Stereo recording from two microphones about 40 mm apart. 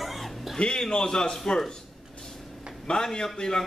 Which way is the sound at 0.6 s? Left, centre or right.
Centre.